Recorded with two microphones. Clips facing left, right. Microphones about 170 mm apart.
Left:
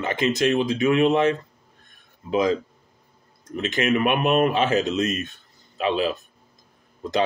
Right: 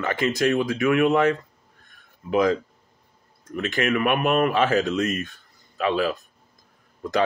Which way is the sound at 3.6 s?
20° left (ahead or behind).